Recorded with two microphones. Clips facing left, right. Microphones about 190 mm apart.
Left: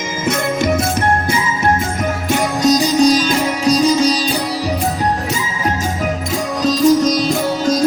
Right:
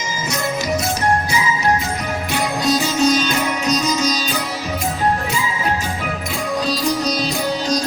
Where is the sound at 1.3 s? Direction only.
50° left (ahead or behind).